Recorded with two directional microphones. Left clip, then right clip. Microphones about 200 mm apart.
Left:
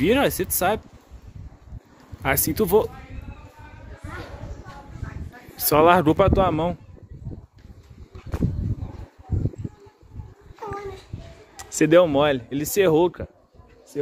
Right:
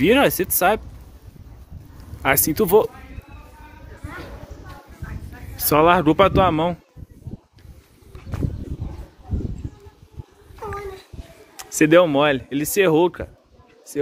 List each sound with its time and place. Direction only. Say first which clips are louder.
0.0 s speech: right 4 dB; centre (ahead or behind)
2.2 s speech: right 4 dB; centre (ahead or behind)
5.7 s speech: right 1 dB; 15° left (ahead or behind)
6.1 s speech: right 3 dB; centre (ahead or behind)
11.5 s speech: right 2 dB; 5° left (ahead or behind)